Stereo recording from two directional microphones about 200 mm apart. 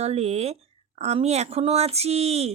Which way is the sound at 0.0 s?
30° right (ahead or behind).